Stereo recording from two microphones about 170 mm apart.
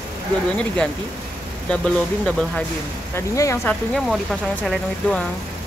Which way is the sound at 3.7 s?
Centre (ahead or behind).